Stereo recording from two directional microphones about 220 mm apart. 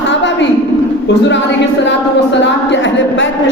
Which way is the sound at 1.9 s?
55° left (ahead or behind).